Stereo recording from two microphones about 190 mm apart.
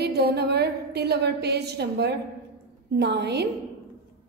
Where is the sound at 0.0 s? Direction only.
60° right (ahead or behind).